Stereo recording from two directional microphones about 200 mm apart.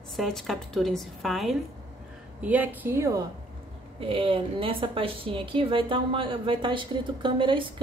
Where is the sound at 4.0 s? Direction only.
25° right (ahead or behind).